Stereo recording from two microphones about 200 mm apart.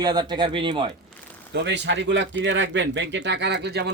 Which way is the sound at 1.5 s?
60° right (ahead or behind).